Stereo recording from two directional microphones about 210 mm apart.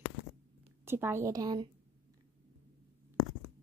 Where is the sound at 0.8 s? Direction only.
10° right (ahead or behind).